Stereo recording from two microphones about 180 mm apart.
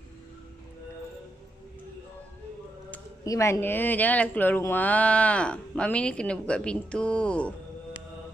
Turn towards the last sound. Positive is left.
turn(degrees=5)  # may be behind; listen again after turning